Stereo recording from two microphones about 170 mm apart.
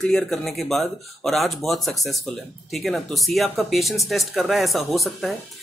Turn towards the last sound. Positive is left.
turn(degrees=0)  # may be behind; listen again after turning